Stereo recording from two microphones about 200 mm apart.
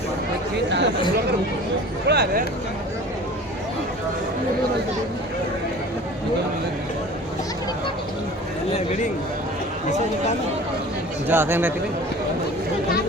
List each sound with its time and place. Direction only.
0.7 s chatter: 60° right (ahead or behind)
2.0 s speech: 50° right (ahead or behind)
11.3 s speech: 10° right (ahead or behind)